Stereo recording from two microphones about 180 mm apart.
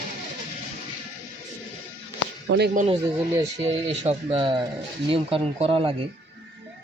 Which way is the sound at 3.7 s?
35° right (ahead or behind).